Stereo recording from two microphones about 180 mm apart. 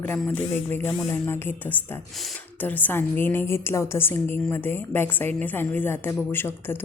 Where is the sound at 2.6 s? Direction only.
10° left (ahead or behind).